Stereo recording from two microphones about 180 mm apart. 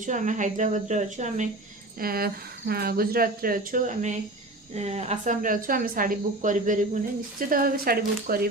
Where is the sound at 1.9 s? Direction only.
55° right (ahead or behind).